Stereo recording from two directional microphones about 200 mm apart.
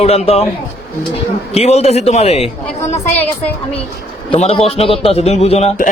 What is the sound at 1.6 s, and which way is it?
Speech, 30° left (ahead or behind).